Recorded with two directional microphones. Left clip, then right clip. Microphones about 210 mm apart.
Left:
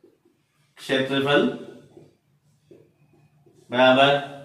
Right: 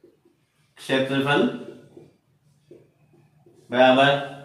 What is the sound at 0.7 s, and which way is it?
Speech, 15° right (ahead or behind).